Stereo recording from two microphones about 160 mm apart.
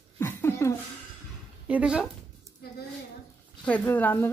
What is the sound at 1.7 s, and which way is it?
Speech, 5° right (ahead or behind).